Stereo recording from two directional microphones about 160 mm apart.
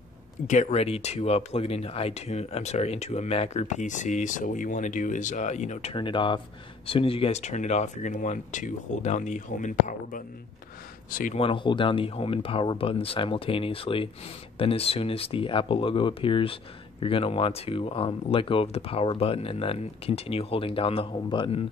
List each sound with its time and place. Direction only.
0.5 s speech: 45° left (ahead or behind); by 11.3 s 60° left (ahead or behind)
11.3 s speech: 35° left (ahead or behind)